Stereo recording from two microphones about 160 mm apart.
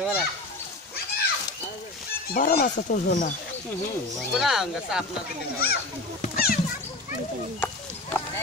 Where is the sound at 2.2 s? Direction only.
70° left (ahead or behind); by 3.3 s 50° left (ahead or behind).